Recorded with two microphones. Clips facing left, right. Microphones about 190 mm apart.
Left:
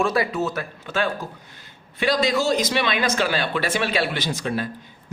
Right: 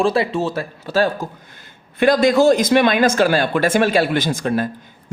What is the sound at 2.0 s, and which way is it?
Speech, 50° right (ahead or behind).